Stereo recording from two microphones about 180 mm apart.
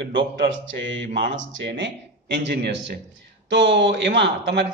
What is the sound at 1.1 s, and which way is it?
A man's voice, 70° right (ahead or behind).